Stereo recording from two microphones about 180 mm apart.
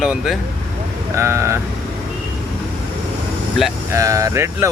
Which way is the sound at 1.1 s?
15° right (ahead or behind).